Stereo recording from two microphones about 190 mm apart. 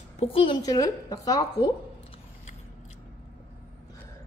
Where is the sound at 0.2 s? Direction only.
30° left (ahead or behind).